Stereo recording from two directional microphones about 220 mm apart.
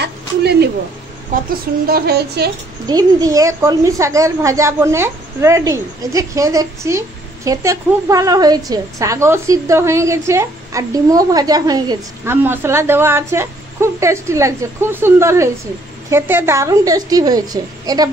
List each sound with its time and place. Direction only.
0.0 s a sound: 50° right (ahead or behind)
1.9 s speech: 45° right (ahead or behind)
2.9 s a woman's voice: 15° right (ahead or behind)